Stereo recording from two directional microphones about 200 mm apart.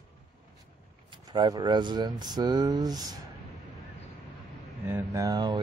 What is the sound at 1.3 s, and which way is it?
A man's voice, 20° right (ahead or behind).